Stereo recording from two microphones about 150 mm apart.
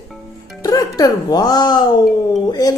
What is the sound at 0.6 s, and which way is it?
A woman's voice, 25° left (ahead or behind).